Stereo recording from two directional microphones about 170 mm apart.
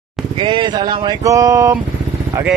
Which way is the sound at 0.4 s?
30° right (ahead or behind).